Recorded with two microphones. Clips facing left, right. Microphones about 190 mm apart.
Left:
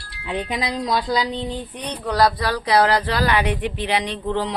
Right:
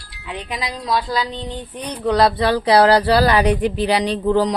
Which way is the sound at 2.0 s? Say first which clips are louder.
Right 4 dB; 25° right (ahead or behind).